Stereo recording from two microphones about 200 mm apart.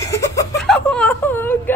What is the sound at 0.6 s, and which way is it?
Wail, 5° left (ahead or behind).